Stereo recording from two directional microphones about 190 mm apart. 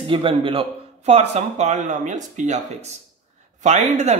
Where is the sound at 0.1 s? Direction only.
30° right (ahead or behind).